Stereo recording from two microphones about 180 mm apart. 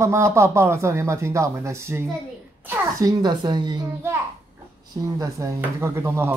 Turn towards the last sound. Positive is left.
turn(degrees=-15)  # may be behind; listen again after turning